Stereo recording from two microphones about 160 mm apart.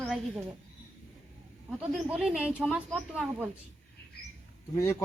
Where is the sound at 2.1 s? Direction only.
5° right (ahead or behind).